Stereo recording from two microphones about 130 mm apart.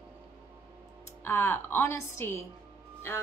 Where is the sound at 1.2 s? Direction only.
20° left (ahead or behind).